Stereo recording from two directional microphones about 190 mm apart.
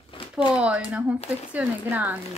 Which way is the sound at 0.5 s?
5° right (ahead or behind).